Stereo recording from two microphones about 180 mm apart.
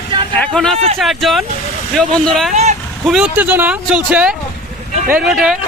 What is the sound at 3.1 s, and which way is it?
Speech, 5° right (ahead or behind).